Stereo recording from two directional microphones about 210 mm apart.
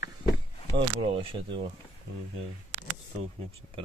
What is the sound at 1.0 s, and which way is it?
Speech, 25° right (ahead or behind).